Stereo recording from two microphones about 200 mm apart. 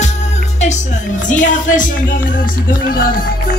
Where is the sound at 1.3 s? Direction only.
40° left (ahead or behind).